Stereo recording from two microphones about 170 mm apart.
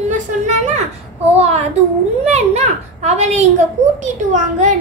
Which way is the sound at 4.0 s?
45° right (ahead or behind).